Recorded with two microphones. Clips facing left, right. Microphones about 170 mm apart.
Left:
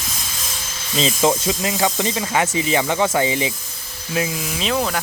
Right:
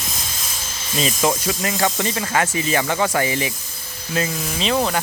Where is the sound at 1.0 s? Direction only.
25° left (ahead or behind).